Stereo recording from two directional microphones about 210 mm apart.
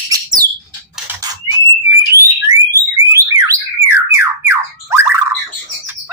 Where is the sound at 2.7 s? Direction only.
15° right (ahead or behind).